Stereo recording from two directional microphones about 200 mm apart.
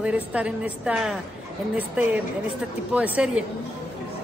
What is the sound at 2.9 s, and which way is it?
Speech, 5° right (ahead or behind).